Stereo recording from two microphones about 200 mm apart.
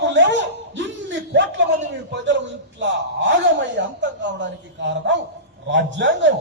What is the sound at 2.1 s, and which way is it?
A man's voice, 65° right (ahead or behind).